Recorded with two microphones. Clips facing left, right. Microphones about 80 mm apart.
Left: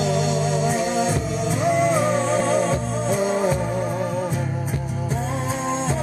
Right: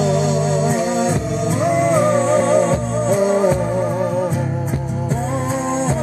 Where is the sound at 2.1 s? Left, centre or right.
Right.